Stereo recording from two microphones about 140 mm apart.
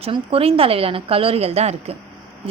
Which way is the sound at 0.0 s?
45° right (ahead or behind).